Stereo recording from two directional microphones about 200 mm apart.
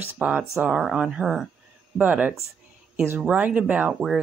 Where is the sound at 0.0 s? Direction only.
10° right (ahead or behind).